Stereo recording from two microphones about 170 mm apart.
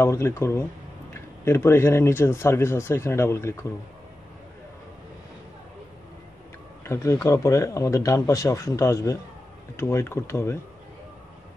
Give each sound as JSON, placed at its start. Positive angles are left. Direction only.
{"t": 0.0, "sound": "speech", "side_deg": 15}
{"t": 6.8, "sound": "speech", "side_deg": 15}